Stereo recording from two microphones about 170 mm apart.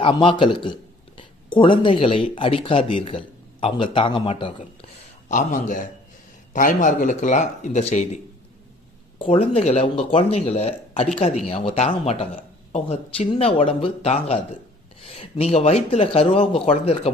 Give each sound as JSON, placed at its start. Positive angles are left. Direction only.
{"t": 0.0, "sound": "a man's voice", "side_deg": 30}
{"t": 5.3, "sound": "speech", "side_deg": 45}